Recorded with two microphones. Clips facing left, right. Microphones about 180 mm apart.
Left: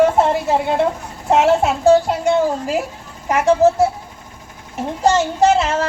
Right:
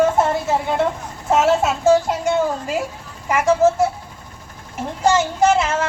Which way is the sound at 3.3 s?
35° left (ahead or behind).